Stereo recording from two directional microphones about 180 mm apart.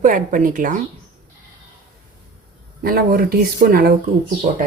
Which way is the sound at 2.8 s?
55° right (ahead or behind).